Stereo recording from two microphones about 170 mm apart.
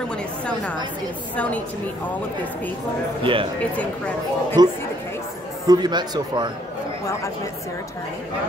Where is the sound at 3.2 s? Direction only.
30° right (ahead or behind).